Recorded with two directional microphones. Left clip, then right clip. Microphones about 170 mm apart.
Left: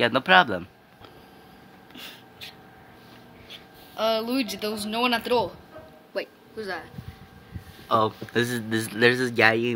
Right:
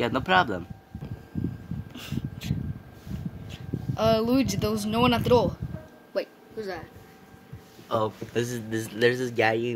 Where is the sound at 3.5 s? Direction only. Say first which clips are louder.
Right 5 dB; 45° right (ahead or behind).